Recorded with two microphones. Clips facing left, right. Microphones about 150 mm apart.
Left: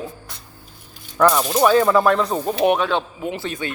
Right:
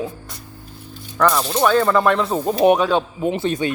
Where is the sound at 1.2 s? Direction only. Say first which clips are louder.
Left 1 dB; 5° left (ahead or behind).